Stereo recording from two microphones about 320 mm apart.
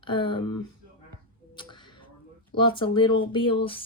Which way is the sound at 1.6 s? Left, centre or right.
Centre.